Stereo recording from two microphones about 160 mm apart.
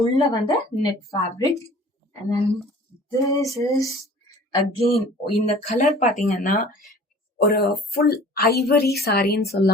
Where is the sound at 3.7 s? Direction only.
20° left (ahead or behind).